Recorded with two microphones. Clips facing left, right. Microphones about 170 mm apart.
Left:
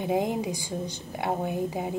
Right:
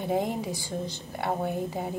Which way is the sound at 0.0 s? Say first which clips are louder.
Left 2 dB; 15° left (ahead or behind).